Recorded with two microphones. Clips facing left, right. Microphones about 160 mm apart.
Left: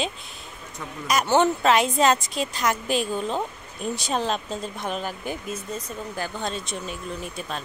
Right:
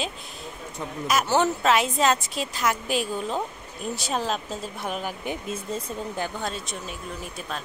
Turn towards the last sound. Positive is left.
turn(degrees=0)  # may be behind; listen again after turning